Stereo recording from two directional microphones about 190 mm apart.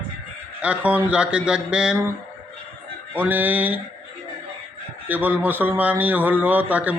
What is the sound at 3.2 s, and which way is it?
Speech, 10° right (ahead or behind).